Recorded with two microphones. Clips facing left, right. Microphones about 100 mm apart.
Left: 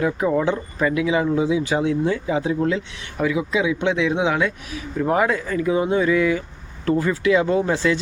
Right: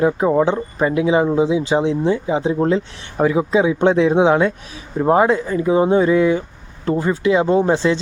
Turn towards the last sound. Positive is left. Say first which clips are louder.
# right 4 dB
turn(degrees=-25)  # may be behind; listen again after turning